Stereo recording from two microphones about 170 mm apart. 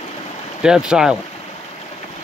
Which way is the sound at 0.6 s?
5° right (ahead or behind).